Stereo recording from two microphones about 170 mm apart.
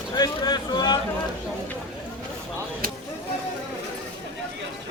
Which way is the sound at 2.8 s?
60° right (ahead or behind).